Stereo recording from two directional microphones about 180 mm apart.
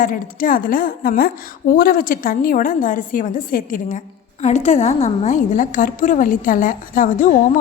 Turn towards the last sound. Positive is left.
turn(degrees=45)  # may be behind; listen again after turning